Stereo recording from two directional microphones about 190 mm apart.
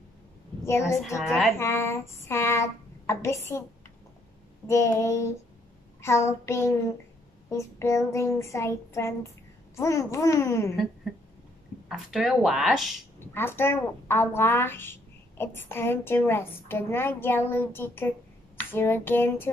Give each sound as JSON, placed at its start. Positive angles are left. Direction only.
{"t": 0.7, "sound": "a woman's voice", "side_deg": 15}
{"t": 1.2, "sound": "speech", "side_deg": 0}
{"t": 1.6, "sound": "a woman's voice", "side_deg": 15}
{"t": 4.6, "sound": "a woman's voice", "side_deg": 15}
{"t": 11.9, "sound": "speech", "side_deg": 0}
{"t": 13.3, "sound": "a woman's voice", "side_deg": 10}